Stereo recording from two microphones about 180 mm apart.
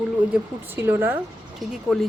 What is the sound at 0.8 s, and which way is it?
Speech, 10° right (ahead or behind).